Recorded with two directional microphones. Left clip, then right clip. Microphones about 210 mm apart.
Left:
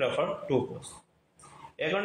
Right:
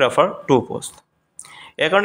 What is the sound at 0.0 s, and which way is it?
A man's voice, 40° right (ahead or behind).